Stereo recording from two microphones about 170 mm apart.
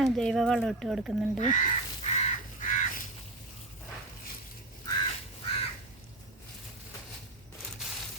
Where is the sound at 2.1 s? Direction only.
50° left (ahead or behind).